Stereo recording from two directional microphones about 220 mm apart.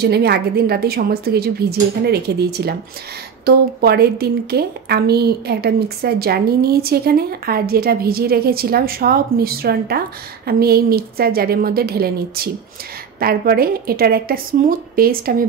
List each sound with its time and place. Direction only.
0.0 s a woman's voice: 45° right (ahead or behind)